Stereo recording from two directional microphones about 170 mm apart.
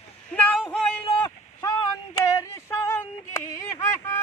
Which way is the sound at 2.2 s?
15° left (ahead or behind).